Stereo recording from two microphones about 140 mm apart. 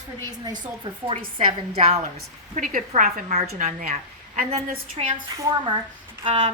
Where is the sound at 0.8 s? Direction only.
35° right (ahead or behind).